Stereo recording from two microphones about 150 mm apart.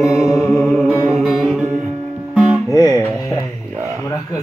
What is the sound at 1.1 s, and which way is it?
Music, centre (ahead or behind).